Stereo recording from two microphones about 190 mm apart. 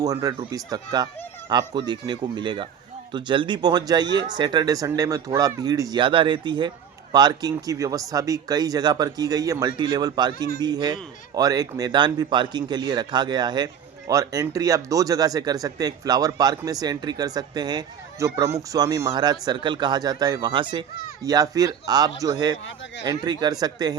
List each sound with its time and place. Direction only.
0.0 s speech: 20° right (ahead or behind)